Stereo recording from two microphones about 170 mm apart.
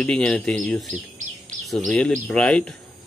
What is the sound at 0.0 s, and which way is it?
Speech, 5° left (ahead or behind).